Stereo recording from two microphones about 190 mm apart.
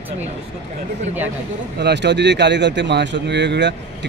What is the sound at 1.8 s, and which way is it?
Speech, 65° right (ahead or behind).